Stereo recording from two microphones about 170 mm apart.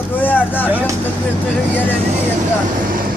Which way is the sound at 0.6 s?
10° right (ahead or behind).